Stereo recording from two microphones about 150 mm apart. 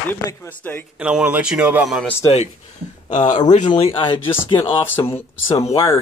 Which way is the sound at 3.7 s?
35° left (ahead or behind).